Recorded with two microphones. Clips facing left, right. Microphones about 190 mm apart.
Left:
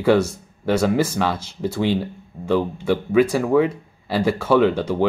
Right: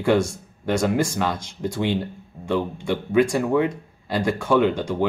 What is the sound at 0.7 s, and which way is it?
Speech, 5° left (ahead or behind).